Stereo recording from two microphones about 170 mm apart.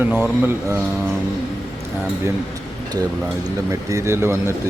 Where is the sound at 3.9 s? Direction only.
15° right (ahead or behind).